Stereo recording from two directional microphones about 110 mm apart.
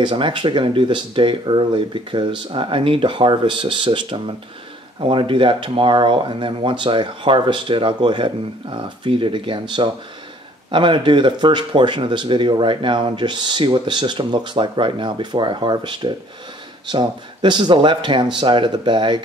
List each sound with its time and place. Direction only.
0.0 s speech: 50° right (ahead or behind)